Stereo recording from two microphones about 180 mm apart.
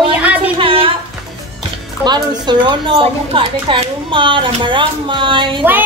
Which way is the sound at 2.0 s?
25° right (ahead or behind).